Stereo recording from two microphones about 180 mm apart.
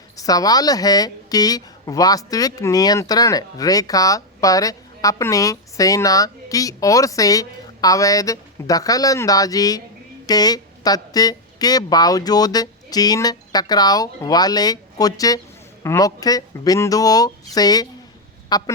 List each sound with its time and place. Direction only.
0.2 s a woman's voice: 20° left (ahead or behind)